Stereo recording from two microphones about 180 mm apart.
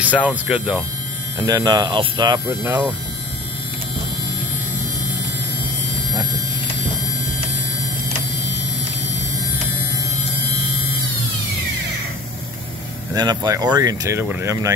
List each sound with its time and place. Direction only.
0.0 s speech: 10° right (ahead or behind)
1.4 s speech: 20° right (ahead or behind)
2.4 s speech: 10° right (ahead or behind)
13.1 s speech: 25° right (ahead or behind)